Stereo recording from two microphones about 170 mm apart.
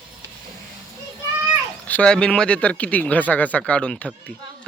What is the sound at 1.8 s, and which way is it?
A man's voice, 10° left (ahead or behind).